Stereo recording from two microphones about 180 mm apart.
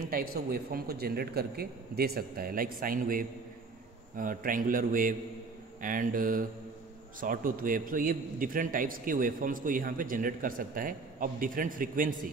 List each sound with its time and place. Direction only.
0.1 s a man's voice: 55° right (ahead or behind)